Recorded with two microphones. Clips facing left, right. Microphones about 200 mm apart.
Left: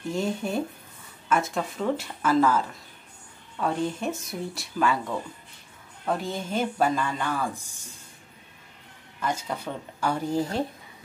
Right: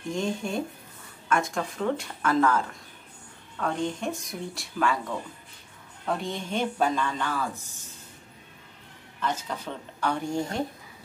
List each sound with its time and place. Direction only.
0.1 s speech: 5° left (ahead or behind)
6.1 s speech: 5° left (ahead or behind)
9.2 s speech: 10° left (ahead or behind)